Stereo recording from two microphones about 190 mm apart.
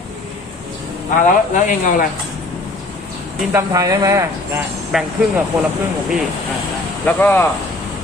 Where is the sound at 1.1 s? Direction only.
45° left (ahead or behind).